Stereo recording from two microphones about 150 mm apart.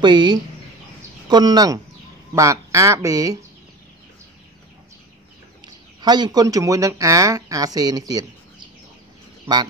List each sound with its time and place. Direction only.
0.0 s speech: 30° right (ahead or behind)
5.6 s speech: 30° right (ahead or behind)